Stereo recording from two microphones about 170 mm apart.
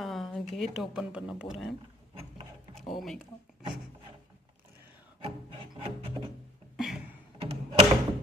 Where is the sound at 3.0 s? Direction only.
Centre (ahead or behind).